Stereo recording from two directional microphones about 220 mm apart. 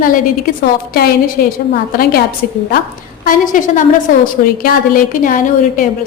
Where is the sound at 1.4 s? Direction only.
45° left (ahead or behind).